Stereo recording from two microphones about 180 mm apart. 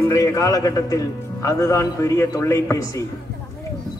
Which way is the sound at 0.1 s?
20° left (ahead or behind).